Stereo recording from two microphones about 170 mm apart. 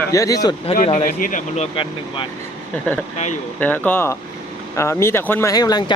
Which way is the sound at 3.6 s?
10° left (ahead or behind).